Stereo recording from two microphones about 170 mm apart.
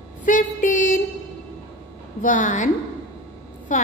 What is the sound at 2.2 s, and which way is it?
A woman's voice, 50° left (ahead or behind).